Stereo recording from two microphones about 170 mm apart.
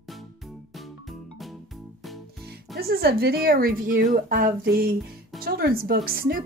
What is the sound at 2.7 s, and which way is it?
A woman's voice, 65° right (ahead or behind).